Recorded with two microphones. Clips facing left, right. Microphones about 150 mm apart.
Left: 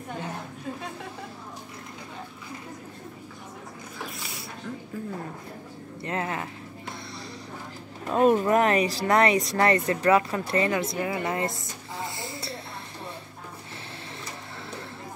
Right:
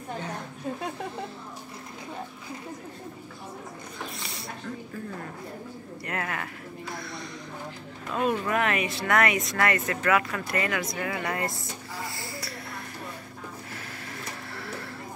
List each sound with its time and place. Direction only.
6.0 s speech: 25° left (ahead or behind)
8.1 s speech: 40° left (ahead or behind); by 11.5 s 25° left (ahead or behind)
12.0 s a sound: 25° left (ahead or behind)